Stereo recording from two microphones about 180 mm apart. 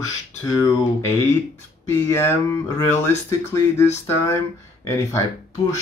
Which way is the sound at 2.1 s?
15° left (ahead or behind).